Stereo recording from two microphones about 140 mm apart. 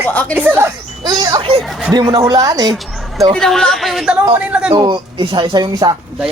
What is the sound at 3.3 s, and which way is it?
Speech, 5° left (ahead or behind).